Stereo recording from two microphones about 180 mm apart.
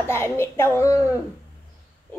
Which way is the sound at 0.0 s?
15° left (ahead or behind).